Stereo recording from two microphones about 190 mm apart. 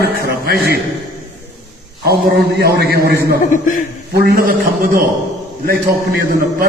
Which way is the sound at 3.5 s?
45° left (ahead or behind).